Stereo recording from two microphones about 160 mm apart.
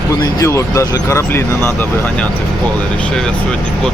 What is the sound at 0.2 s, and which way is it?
Speech, 20° left (ahead or behind).